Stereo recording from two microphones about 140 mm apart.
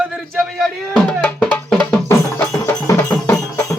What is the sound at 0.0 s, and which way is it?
Music, centre (ahead or behind).